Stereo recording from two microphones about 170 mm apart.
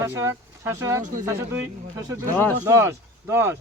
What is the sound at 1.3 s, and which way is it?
Speech, 15° right (ahead or behind).